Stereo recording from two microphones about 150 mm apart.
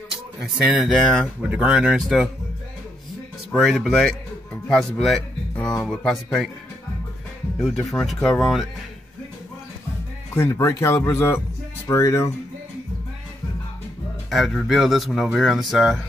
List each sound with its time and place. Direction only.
0.7 s speech: centre (ahead or behind)
3.5 s speech: centre (ahead or behind)
7.5 s speech: centre (ahead or behind)
10.3 s speech: 15° left (ahead or behind)
14.3 s speech: centre (ahead or behind)